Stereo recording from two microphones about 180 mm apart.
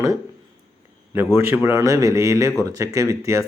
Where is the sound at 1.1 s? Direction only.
10° right (ahead or behind).